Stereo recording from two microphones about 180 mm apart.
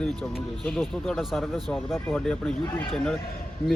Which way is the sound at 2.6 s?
25° left (ahead or behind).